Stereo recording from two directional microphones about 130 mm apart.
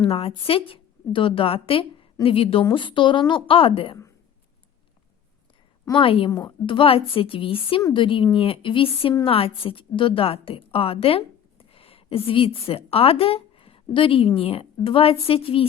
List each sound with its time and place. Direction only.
0.0 s a woman's voice: 45° left (ahead or behind)
6.0 s a woman's voice: 45° left (ahead or behind)